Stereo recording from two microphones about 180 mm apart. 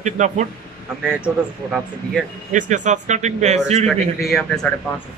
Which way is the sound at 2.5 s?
45° right (ahead or behind).